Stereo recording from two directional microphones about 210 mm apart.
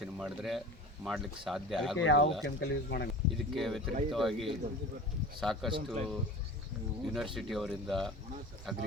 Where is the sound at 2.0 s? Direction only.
60° left (ahead or behind).